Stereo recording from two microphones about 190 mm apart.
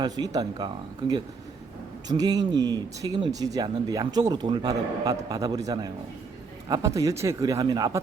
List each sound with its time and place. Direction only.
0.0 s speech: 20° right (ahead or behind)